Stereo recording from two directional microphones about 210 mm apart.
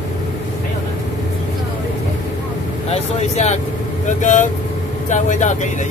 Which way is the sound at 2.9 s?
30° left (ahead or behind).